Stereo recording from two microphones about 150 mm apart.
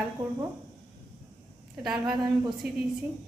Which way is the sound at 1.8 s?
5° right (ahead or behind).